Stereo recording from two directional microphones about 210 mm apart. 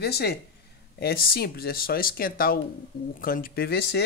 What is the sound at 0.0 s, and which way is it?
Speech, 50° left (ahead or behind).